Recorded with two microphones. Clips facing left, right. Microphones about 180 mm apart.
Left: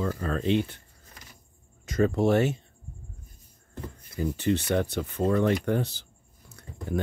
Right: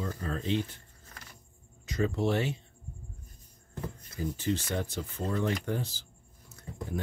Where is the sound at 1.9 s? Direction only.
50° left (ahead or behind).